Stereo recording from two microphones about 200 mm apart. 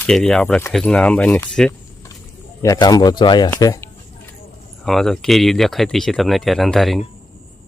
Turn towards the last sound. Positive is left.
turn(degrees=0)  # may be behind; listen again after turning